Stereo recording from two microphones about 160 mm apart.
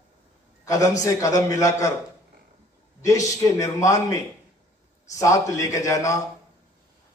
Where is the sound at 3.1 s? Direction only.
20° left (ahead or behind).